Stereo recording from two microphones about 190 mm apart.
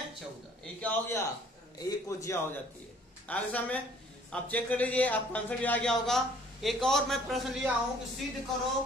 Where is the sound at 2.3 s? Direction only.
15° left (ahead or behind); by 7.7 s centre (ahead or behind).